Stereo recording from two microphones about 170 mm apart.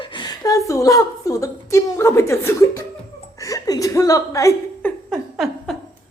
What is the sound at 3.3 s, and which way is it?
Chuckle, 20° left (ahead or behind).